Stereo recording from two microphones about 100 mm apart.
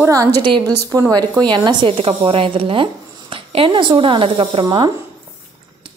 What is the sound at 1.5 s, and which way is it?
Speech, 50° right (ahead or behind).